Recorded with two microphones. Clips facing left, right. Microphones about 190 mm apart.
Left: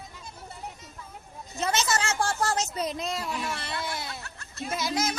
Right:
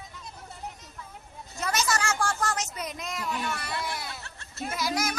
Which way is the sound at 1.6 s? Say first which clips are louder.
Left 1 dB; 25° left (ahead or behind).